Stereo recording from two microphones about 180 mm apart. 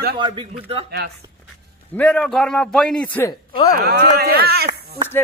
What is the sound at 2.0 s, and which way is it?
A man's voice, 5° left (ahead or behind).